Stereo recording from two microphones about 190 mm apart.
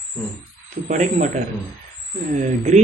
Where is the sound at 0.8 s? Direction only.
40° right (ahead or behind).